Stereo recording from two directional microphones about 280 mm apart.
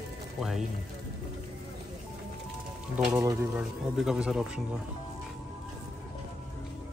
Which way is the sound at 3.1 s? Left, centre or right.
Centre.